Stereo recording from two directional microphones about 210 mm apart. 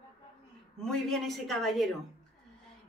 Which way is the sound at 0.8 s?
Centre (ahead or behind).